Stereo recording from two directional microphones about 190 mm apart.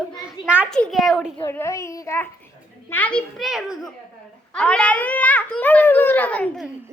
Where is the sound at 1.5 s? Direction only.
15° left (ahead or behind).